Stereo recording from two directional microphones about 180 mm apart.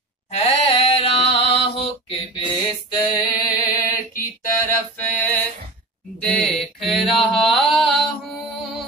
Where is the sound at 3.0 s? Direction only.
20° left (ahead or behind).